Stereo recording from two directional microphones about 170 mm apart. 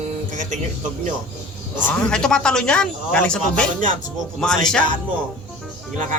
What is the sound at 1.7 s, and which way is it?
Speech, 5° left (ahead or behind).